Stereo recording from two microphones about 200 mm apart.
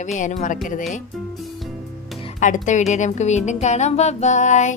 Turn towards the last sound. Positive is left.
turn(degrees=35)  # may be behind; listen again after turning